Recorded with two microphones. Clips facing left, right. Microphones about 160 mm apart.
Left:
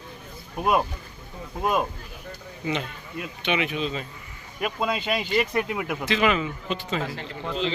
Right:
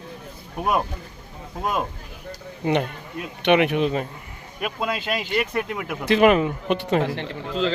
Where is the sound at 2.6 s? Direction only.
60° right (ahead or behind).